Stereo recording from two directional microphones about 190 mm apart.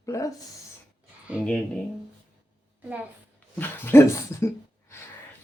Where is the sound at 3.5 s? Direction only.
10° left (ahead or behind).